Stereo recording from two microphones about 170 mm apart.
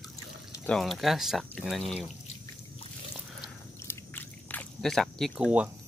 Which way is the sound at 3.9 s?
10° left (ahead or behind).